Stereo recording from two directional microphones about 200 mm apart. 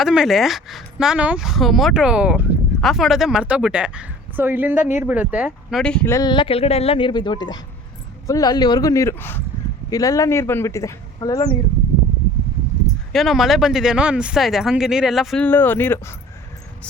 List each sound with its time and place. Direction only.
0.0 s speech: centre (ahead or behind)
5.8 s speech: 5° left (ahead or behind)
6.1 s speech: 20° left (ahead or behind)
13.1 s speech: centre (ahead or behind)